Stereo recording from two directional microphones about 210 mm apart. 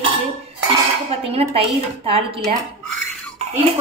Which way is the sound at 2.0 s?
25° right (ahead or behind).